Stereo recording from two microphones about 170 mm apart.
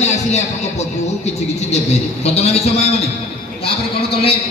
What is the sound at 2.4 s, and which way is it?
Speech, 40° left (ahead or behind).